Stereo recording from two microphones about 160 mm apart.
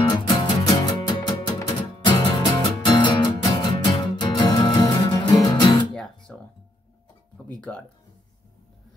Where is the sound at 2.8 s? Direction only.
25° left (ahead or behind).